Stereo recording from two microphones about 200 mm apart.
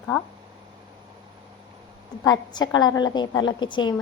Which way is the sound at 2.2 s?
20° left (ahead or behind).